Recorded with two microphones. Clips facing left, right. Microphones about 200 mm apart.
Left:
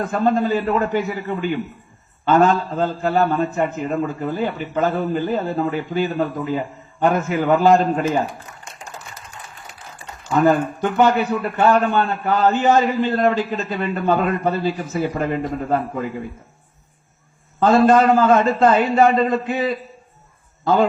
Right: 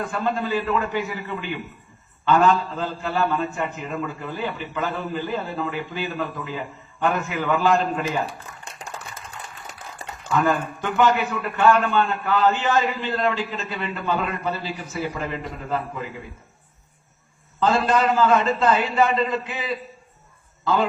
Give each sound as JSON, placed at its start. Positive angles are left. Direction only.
{"t": 0.0, "sound": "a man's voice", "side_deg": 45}
{"t": 10.2, "sound": "a man's voice", "side_deg": 45}
{"t": 17.6, "sound": "a man's voice", "side_deg": 45}